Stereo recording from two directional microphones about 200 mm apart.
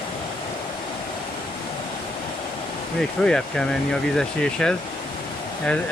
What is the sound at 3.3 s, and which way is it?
Speech, 5° left (ahead or behind).